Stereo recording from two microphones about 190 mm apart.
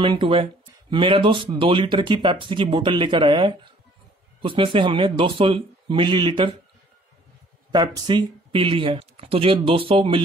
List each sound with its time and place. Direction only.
0.0 s speech: 25° right (ahead or behind)
7.7 s speech: 20° right (ahead or behind)